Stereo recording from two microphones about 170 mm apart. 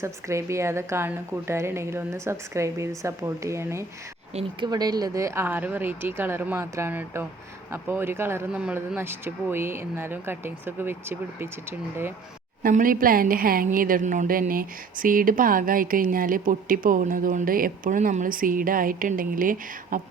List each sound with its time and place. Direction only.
0.0 s a woman's voice: 15° right (ahead or behind)
12.6 s a woman's voice: 55° right (ahead or behind)